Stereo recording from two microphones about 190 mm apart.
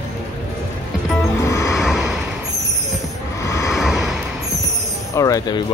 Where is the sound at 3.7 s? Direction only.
Centre (ahead or behind).